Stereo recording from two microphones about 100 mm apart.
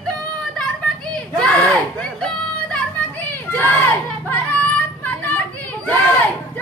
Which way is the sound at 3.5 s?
20° left (ahead or behind).